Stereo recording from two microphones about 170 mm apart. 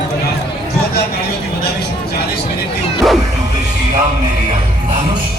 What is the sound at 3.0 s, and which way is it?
Music, centre (ahead or behind).